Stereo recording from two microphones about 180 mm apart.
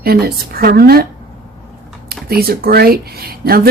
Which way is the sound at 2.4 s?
60° right (ahead or behind).